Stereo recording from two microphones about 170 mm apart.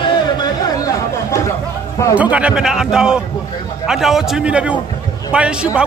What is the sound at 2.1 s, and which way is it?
A man's voice, 10° right (ahead or behind).